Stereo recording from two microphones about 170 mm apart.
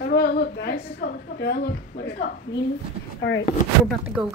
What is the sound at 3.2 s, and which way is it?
Speech, 90° left.